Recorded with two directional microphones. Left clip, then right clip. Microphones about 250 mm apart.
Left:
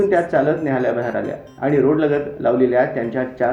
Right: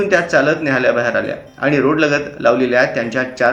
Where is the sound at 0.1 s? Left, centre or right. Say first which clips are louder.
Right 3 dB; centre.